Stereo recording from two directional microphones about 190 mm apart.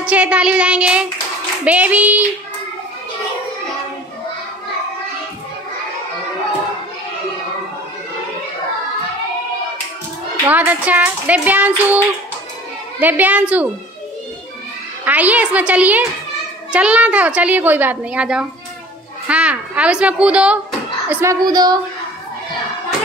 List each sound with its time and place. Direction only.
0.0 s child singing: 5° right (ahead or behind)
1.6 s a child's voice: 10° right (ahead or behind)
10.4 s a child's voice: 10° right (ahead or behind)
13.0 s a child's voice: 10° right (ahead or behind)
15.0 s a child's voice: 10° right (ahead or behind)